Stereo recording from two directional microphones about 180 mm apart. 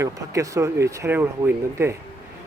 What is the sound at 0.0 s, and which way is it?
Speech, 15° right (ahead or behind).